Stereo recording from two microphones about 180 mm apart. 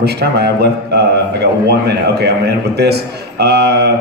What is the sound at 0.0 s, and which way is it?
A man's voice, 65° right (ahead or behind).